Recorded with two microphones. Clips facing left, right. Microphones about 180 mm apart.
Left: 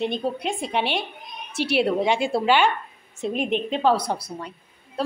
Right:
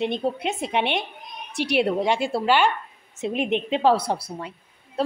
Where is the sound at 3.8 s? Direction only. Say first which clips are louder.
Right 1 dB; 30° right (ahead or behind).